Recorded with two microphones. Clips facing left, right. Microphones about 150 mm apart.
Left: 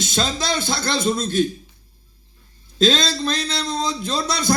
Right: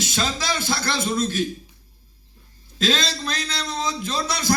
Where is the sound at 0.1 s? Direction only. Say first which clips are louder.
Left 5 dB; 25° left (ahead or behind).